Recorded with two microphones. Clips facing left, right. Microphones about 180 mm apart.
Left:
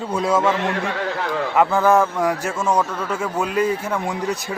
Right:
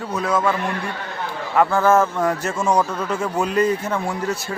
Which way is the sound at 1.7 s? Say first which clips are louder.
Even; 15° left (ahead or behind).